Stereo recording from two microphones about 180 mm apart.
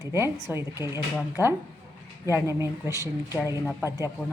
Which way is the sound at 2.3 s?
15° right (ahead or behind).